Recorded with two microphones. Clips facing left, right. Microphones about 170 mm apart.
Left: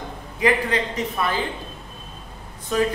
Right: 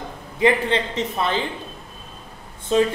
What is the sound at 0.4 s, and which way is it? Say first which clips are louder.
A man's voice: right 2 dB; 25° right (ahead or behind).